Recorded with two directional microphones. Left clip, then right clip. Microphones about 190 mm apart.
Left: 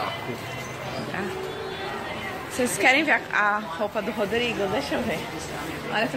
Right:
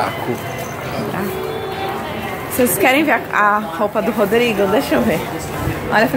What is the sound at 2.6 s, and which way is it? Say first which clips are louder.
A woman's voice: right 6 dB; 10° right (ahead or behind).